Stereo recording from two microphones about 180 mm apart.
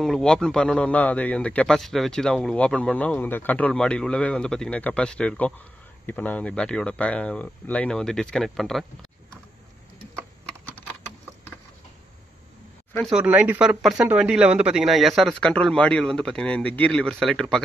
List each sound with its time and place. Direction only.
0.0 s a man's voice: centre (ahead or behind)
12.9 s speech: centre (ahead or behind)
13.2 s a man's voice: 10° right (ahead or behind)